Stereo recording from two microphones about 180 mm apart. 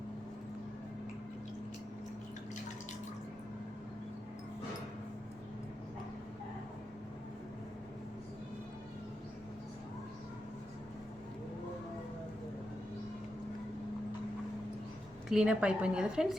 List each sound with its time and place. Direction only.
15.3 s speech: 5° right (ahead or behind)